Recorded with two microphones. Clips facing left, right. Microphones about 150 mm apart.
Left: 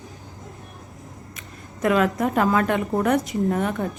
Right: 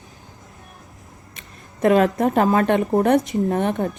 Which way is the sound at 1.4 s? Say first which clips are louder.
Right 5 dB; 30° right (ahead or behind).